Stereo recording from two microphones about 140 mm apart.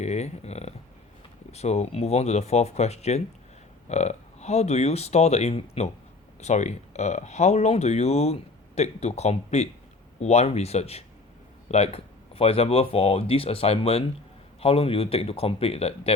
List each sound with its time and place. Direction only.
0.0 s speech: 50° left (ahead or behind)